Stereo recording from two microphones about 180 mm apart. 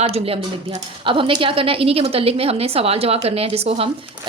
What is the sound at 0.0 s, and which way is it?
A woman's voice, 35° right (ahead or behind).